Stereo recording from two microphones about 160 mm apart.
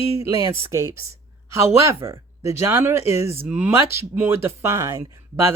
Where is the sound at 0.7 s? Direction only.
15° right (ahead or behind).